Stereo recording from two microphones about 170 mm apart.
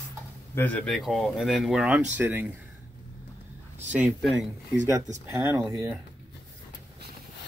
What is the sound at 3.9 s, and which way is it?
Speech, 5° right (ahead or behind).